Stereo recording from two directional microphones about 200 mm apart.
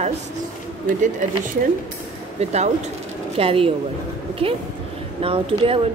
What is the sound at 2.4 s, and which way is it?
Speech, 35° right (ahead or behind).